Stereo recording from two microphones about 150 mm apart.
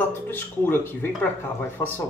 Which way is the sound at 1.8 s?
15° left (ahead or behind).